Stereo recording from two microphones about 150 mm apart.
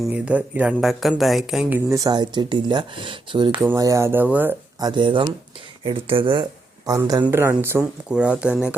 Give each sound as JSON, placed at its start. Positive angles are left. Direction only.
{"t": 0.0, "sound": "speech", "side_deg": -10}
{"t": 1.9, "sound": "speech", "side_deg": -25}
{"t": 3.8, "sound": "speech", "side_deg": -20}
{"t": 4.8, "sound": "speech", "side_deg": -30}